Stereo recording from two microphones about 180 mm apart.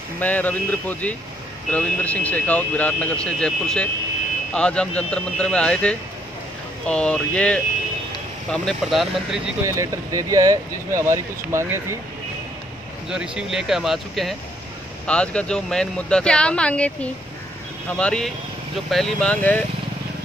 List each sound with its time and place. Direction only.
0.2 s speech: 10° left (ahead or behind)
9.7 s speech: 15° right (ahead or behind)
13.1 s speech: 5° right (ahead or behind)